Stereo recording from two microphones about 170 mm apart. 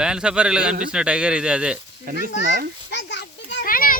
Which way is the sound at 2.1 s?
60° right (ahead or behind).